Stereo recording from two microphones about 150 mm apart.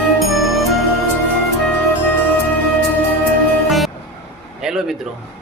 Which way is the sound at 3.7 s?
Centre (ahead or behind).